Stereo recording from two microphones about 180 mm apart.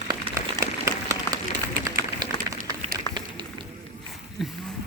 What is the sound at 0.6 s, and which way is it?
Applause, 20° right (ahead or behind).